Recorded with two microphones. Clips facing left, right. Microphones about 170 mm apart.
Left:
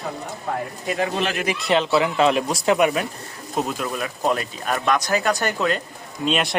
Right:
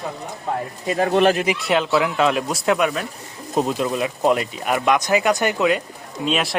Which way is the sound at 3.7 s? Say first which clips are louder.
Right 5 dB; 20° right (ahead or behind).